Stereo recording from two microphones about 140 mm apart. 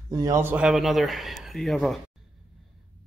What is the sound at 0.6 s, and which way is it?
Speech, 5° right (ahead or behind).